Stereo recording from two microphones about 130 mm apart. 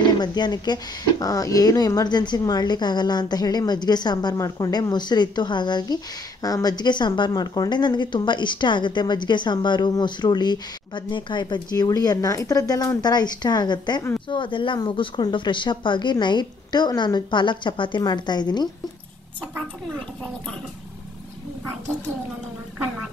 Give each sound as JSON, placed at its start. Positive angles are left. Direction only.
{"t": 0.2, "sound": "a woman's voice", "side_deg": 35}